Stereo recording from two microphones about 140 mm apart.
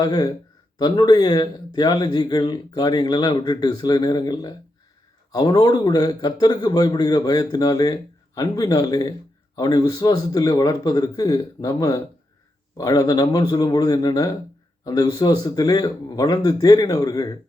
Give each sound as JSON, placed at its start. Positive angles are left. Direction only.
{"t": 0.0, "sound": "speech", "side_deg": 30}